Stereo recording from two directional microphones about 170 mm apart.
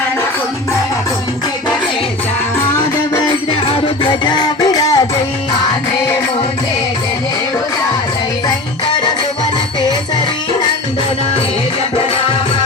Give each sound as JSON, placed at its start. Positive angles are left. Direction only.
{"t": 3.7, "sound": "music", "side_deg": 30}